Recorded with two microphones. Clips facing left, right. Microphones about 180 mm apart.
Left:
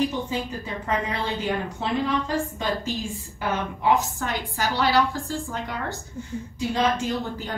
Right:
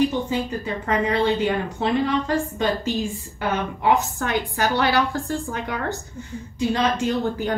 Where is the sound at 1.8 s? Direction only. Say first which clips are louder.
Right 5 dB; 65° right (ahead or behind).